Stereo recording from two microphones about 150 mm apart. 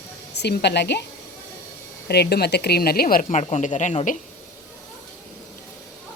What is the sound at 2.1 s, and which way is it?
Speech, 90° left.